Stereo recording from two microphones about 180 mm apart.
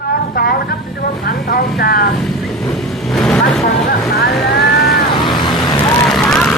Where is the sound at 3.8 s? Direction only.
60° left (ahead or behind).